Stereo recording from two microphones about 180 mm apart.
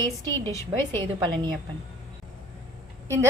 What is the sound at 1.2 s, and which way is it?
Speech, 25° right (ahead or behind).